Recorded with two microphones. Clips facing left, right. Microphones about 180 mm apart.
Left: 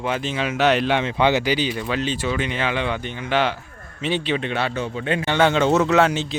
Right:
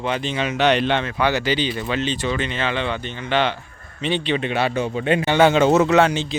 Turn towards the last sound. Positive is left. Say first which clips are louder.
# right 1 dB
turn(degrees=0)  # may be behind; listen again after turning